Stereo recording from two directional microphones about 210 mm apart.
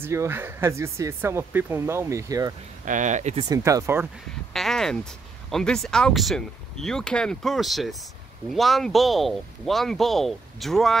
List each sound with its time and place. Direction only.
0.0 s speech: 10° right (ahead or behind)
2.8 s speech: 35° right (ahead or behind)
3.4 s speech: 15° right (ahead or behind)
4.6 s speech: centre (ahead or behind)